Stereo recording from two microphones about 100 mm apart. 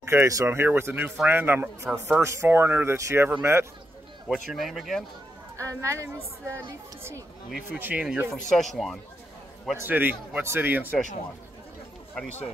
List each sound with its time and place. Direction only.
0.0 s speech: 25° right (ahead or behind)
4.3 s speech: centre (ahead or behind)
5.6 s speech: 30° right (ahead or behind)
7.7 s speech: 15° right (ahead or behind)
8.3 s speech: 5° left (ahead or behind)
9.8 s speech: 20° right (ahead or behind)